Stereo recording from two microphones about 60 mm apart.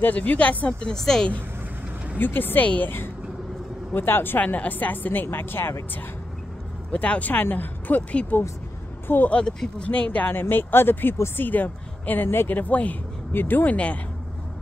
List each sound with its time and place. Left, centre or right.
0.0 s speech: left; by 1.3 s centre
2.1 s speech: left
3.9 s speech: left
6.9 s speech: left
9.3 s speech: centre
9.8 s speech: left
10.4 s speech: left